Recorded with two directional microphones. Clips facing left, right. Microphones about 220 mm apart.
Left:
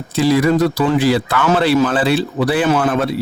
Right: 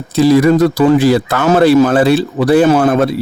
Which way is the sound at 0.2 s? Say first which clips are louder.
Right 5 dB; 45° right (ahead or behind).